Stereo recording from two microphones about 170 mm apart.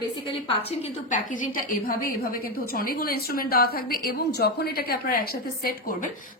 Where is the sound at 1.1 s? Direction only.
50° left (ahead or behind).